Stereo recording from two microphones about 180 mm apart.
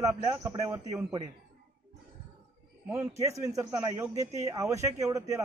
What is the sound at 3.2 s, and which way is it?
Speech, 15° right (ahead or behind).